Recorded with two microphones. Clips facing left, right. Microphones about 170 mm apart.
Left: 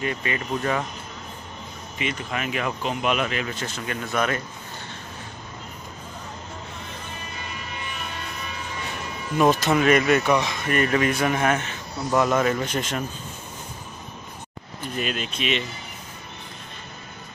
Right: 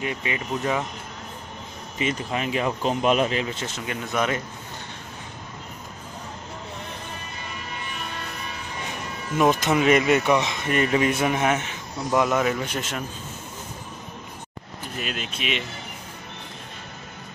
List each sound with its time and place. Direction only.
0.0 s speech: 15° right (ahead or behind)
2.0 s speech: 30° right (ahead or behind)
9.4 s speech: 15° right (ahead or behind)
15.0 s speech: 5° right (ahead or behind)